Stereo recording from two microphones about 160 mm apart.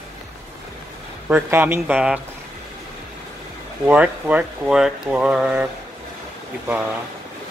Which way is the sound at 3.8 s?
10° right (ahead or behind).